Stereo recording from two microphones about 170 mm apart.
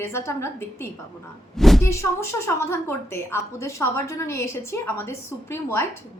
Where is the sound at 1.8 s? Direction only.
15° left (ahead or behind).